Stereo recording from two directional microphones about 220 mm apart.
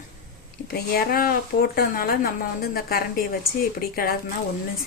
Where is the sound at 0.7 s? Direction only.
45° left (ahead or behind).